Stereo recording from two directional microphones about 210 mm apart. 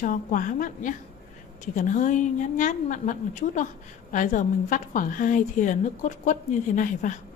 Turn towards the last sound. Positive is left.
turn(degrees=35)  # may be behind; listen again after turning